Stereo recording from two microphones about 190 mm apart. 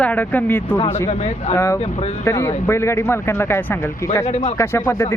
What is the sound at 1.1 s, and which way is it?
Speech, 35° left (ahead or behind).